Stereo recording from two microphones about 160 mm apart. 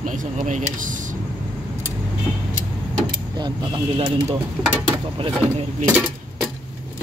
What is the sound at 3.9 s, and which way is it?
Speech, 35° right (ahead or behind).